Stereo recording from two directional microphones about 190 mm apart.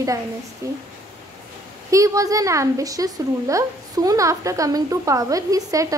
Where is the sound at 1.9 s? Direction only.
15° right (ahead or behind).